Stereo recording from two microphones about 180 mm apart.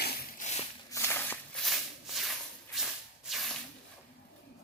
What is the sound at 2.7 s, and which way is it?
Rub, centre (ahead or behind).